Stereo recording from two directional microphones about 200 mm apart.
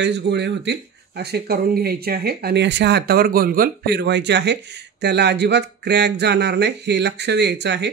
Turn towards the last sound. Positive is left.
turn(degrees=-60)  # may be behind; listen again after turning